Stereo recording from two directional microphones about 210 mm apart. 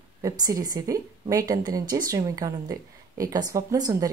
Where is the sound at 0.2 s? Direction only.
15° right (ahead or behind).